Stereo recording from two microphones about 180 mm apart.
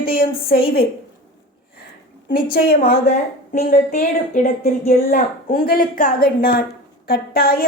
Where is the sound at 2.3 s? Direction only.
55° left (ahead or behind).